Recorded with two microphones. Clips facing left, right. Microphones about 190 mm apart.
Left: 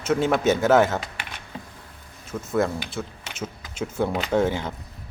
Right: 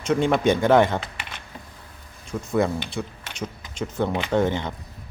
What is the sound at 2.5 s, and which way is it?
Speech, centre (ahead or behind).